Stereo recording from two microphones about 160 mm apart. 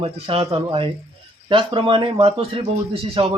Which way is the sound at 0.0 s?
35° right (ahead or behind).